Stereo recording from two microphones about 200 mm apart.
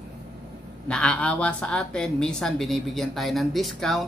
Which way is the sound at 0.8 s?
5° left (ahead or behind).